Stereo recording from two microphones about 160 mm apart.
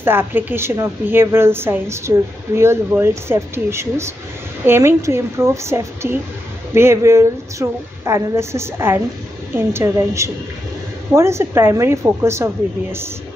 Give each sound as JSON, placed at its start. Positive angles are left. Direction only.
{"t": 0.0, "sound": "a woman's voice", "side_deg": -15}